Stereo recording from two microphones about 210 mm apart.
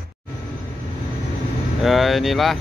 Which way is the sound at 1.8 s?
Centre (ahead or behind).